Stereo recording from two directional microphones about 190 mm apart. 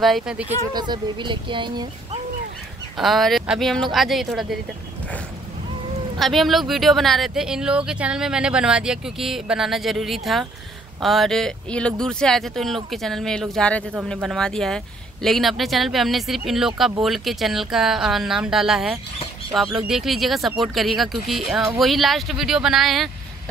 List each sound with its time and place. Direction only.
0.0 s speech: centre (ahead or behind)
0.7 s speech: 25° right (ahead or behind)
3.0 s speech: centre (ahead or behind)
6.1 s speech: centre (ahead or behind)